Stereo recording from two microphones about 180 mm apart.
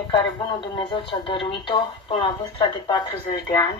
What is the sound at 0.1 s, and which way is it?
Speech, 25° left (ahead or behind).